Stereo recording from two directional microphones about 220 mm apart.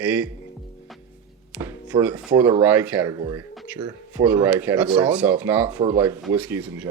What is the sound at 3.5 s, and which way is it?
Music, 5° right (ahead or behind).